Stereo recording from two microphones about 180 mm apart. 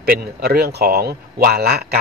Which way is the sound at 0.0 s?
60° right (ahead or behind).